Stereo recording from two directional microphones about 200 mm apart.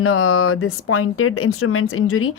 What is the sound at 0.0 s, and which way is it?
Speech, 90° left.